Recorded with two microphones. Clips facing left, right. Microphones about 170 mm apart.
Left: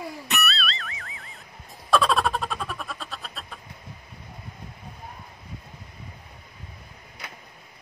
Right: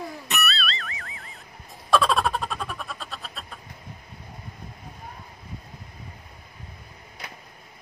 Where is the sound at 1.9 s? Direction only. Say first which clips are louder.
Even; centre (ahead or behind).